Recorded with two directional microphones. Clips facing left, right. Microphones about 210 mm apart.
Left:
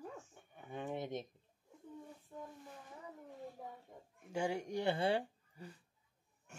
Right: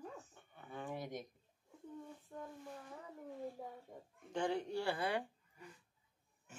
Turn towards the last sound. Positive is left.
turn(degrees=30)  # may be behind; listen again after turning